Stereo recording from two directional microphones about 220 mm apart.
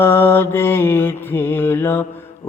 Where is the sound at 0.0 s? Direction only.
10° left (ahead or behind).